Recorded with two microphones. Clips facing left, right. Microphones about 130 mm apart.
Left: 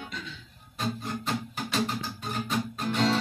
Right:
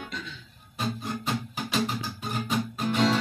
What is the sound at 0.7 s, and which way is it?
Music, 5° right (ahead or behind).